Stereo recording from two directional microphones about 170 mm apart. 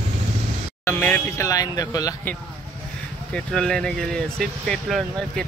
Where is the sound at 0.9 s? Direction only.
10° left (ahead or behind).